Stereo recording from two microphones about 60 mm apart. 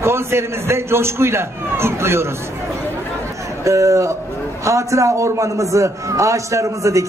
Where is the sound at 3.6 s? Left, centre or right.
Right.